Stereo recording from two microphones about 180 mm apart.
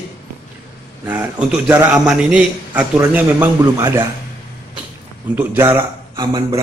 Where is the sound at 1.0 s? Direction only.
10° right (ahead or behind).